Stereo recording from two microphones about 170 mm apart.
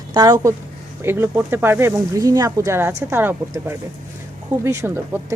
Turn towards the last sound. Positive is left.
turn(degrees=-15)  # may be behind; listen again after turning